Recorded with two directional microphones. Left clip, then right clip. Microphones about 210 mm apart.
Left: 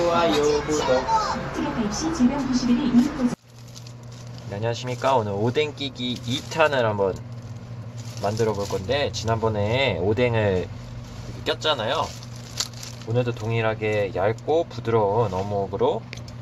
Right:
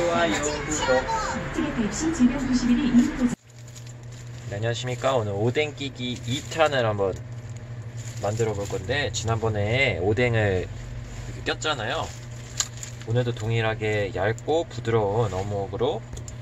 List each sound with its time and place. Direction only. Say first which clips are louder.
0.0 s music: left 3 dB; 15° left (ahead or behind)
0.5 s speech: left 3 dB; centre (ahead or behind)
4.5 s speech: left 1 dB; centre (ahead or behind)
6.5 s speech: left 2 dB; centre (ahead or behind)
8.2 s speech: left 3 dB; centre (ahead or behind)